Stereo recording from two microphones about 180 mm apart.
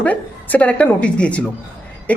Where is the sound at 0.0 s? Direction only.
10° left (ahead or behind).